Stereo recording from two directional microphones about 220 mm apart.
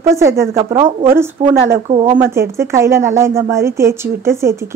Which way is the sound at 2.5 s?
10° right (ahead or behind).